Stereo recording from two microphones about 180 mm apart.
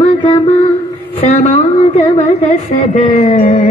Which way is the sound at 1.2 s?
40° left (ahead or behind).